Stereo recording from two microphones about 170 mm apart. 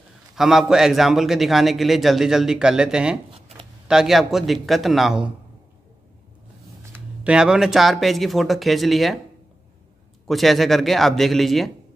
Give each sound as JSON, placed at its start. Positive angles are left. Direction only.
{"t": 0.4, "sound": "a man's voice", "side_deg": 0}
{"t": 3.3, "sound": "a sound", "side_deg": -35}
{"t": 3.8, "sound": "a man's voice", "side_deg": 0}
{"t": 6.9, "sound": "a man's voice", "side_deg": -5}
{"t": 10.2, "sound": "a man's voice", "side_deg": 0}